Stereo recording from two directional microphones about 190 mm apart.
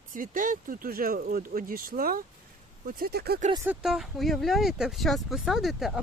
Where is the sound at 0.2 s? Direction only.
45° right (ahead or behind).